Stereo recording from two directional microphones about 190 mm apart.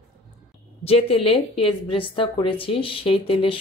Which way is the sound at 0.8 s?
30° left (ahead or behind).